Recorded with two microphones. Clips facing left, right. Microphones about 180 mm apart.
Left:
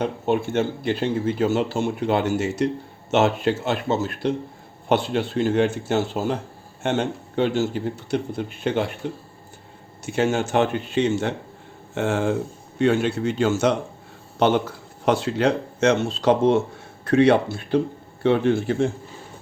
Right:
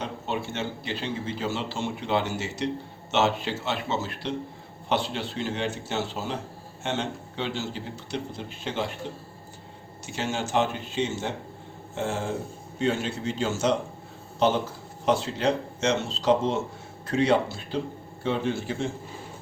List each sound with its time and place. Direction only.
0.0 s a man's voice: 50° left (ahead or behind)
10.1 s speech: 55° left (ahead or behind)